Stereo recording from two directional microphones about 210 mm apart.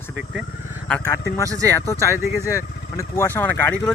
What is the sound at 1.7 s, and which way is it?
Speech, 10° left (ahead or behind).